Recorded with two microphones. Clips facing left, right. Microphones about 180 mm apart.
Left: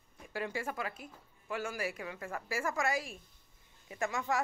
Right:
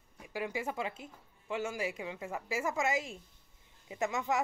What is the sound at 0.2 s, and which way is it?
Speech, 15° right (ahead or behind).